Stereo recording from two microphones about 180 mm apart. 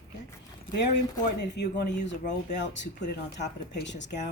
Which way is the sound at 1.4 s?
70° left (ahead or behind).